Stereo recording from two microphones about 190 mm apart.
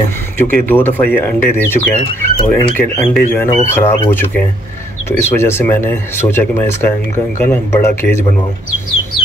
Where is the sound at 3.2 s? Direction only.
10° left (ahead or behind).